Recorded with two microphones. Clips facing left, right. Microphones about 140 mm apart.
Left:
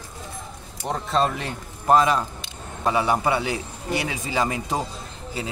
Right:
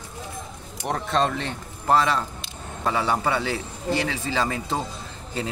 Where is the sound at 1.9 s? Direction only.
15° left (ahead or behind).